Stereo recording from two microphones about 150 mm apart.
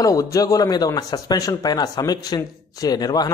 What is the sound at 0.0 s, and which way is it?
Speech, 20° left (ahead or behind).